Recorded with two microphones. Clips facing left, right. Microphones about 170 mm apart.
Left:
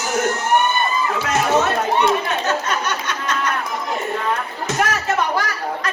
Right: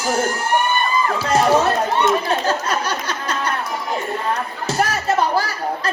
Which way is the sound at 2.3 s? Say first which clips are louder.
Right 1 dB; 35° right (ahead or behind).